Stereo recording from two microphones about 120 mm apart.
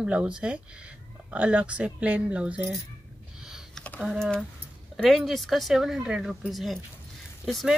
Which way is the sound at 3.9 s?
Centre (ahead or behind).